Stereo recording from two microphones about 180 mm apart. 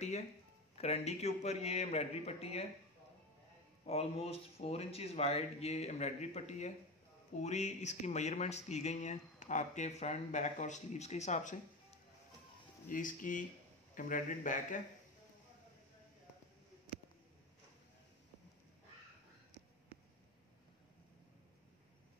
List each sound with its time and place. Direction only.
0.7 s speech: 35° left (ahead or behind)
3.8 s speech: 35° left (ahead or behind)
12.8 s speech: 45° left (ahead or behind)